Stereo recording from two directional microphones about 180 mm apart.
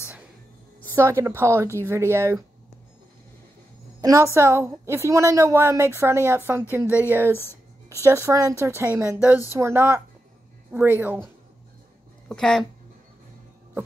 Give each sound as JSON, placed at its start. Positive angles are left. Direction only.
{"t": 0.8, "sound": "a woman's voice", "side_deg": -15}
{"t": 4.0, "sound": "a woman's voice", "side_deg": -15}
{"t": 12.3, "sound": "speech", "side_deg": 5}